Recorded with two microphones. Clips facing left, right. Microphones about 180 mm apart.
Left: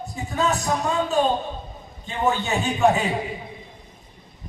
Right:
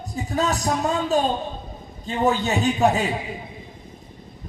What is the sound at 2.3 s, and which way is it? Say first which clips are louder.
Speech: right 2 dB; 35° right (ahead or behind).